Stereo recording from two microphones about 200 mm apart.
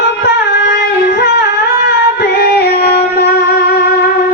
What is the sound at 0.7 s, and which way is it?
Singing, 55° left (ahead or behind).